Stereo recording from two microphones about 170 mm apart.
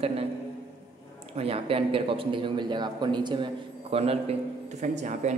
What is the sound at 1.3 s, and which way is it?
A man's voice, 35° right (ahead or behind).